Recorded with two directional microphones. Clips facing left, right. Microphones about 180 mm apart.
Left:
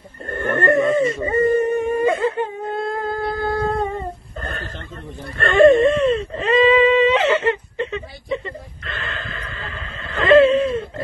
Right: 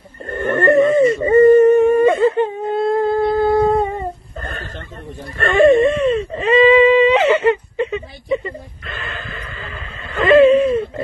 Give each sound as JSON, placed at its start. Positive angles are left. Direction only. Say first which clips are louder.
{"t": 0.3, "sound": "dog", "louder": "right 4 dB", "side_deg": -20}
{"t": 5.7, "sound": "whimper", "louder": "right 1 dB", "side_deg": -5}
{"t": 10.2, "sound": "wheeze", "louder": "right 3 dB", "side_deg": -15}